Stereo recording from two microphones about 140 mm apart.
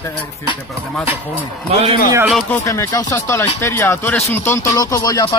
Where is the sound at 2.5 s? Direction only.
20° left (ahead or behind).